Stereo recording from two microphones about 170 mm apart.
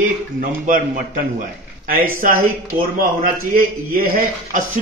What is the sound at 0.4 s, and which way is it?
Speech, 55° right (ahead or behind).